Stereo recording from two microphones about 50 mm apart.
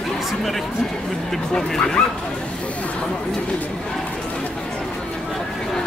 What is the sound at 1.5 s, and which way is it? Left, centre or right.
Speech, centre.